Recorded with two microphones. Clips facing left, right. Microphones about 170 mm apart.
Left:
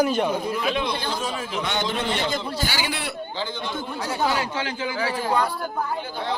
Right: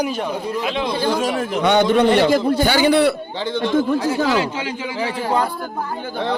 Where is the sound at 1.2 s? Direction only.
65° right (ahead or behind).